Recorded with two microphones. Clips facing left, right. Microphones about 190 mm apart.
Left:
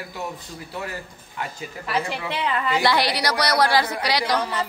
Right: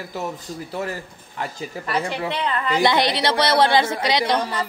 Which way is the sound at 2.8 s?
20° right (ahead or behind).